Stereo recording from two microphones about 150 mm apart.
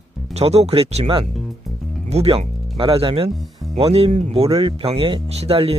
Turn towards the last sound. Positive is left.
turn(degrees=-40)  # may be behind; listen again after turning